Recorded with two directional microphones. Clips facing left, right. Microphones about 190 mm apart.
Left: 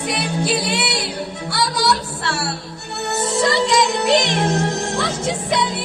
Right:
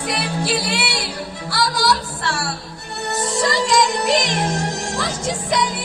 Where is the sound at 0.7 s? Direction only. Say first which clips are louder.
Left 2 dB; 25° left (ahead or behind).